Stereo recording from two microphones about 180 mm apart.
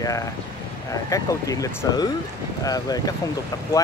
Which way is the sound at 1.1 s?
20° left (ahead or behind).